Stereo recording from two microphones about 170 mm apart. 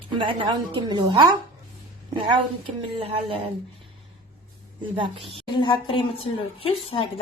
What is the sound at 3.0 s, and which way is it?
Speech, 35° right (ahead or behind).